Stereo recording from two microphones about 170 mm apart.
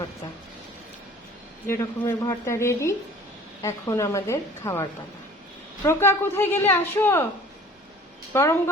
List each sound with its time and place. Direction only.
1.6 s a woman's voice: 15° left (ahead or behind)
8.3 s a woman's voice: 15° left (ahead or behind)